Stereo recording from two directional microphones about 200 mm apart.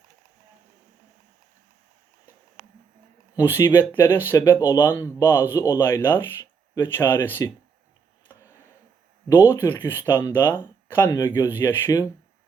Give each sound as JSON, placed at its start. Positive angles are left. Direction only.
{"t": 3.3, "sound": "speech", "side_deg": 15}
{"t": 9.3, "sound": "speech", "side_deg": 15}